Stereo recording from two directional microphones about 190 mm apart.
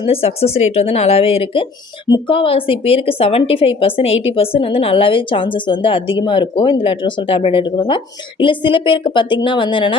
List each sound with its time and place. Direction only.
0.0 s a woman's voice: 30° left (ahead or behind)